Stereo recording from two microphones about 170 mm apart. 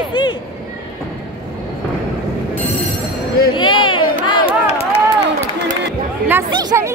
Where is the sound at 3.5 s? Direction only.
30° left (ahead or behind).